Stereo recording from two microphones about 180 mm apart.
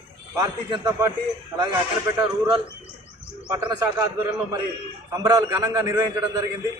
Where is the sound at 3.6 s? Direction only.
25° right (ahead or behind).